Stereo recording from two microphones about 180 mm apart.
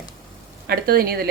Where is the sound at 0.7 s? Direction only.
55° right (ahead or behind).